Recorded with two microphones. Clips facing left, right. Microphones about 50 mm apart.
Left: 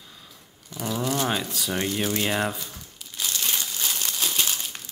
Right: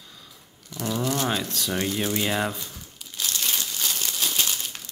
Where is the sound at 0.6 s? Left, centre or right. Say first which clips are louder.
Right 1 dB; centre.